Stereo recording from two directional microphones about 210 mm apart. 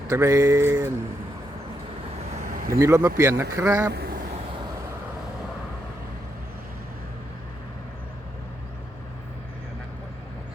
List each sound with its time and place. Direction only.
0.1 s speech: 15° right (ahead or behind)
2.5 s vehicle: 40° right (ahead or behind)
2.7 s speech: 15° right (ahead or behind)
3.9 s vehicle: 45° right (ahead or behind)